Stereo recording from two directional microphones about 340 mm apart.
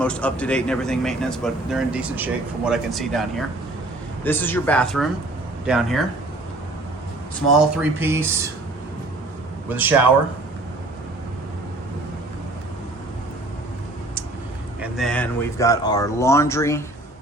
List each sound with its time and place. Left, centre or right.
0.0 s speech: centre
7.6 s speech: centre
9.6 s speech: centre
14.8 s speech: centre